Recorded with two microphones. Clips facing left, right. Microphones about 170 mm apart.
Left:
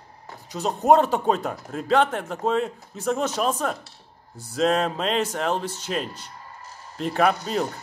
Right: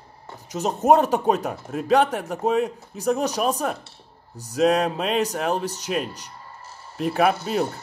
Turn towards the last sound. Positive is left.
turn(degrees=-10)  # may be behind; listen again after turning